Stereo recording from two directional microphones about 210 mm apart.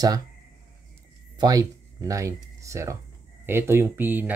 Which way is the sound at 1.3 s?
20° right (ahead or behind).